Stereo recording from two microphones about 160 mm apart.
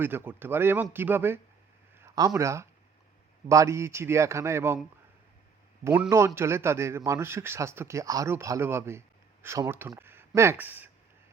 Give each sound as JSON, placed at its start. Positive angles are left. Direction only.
{"t": 0.0, "sound": "a man's voice", "side_deg": -15}
{"t": 5.8, "sound": "a man's voice", "side_deg": -15}